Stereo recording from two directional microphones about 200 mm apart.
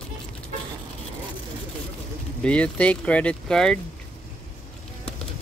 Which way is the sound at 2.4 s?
5° left (ahead or behind).